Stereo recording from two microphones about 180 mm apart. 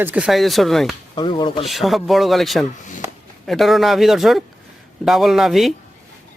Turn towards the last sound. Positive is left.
turn(degrees=0)  # may be behind; listen again after turning